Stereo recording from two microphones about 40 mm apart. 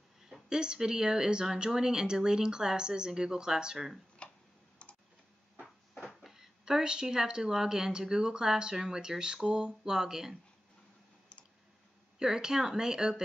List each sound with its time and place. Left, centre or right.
0.5 s speech: centre
4.2 s tick-tock: left
6.3 s a sound: centre
7.2 s speech: centre
12.2 s speech: centre